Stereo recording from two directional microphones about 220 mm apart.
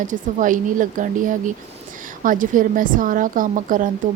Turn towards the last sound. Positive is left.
turn(degrees=-35)  # may be behind; listen again after turning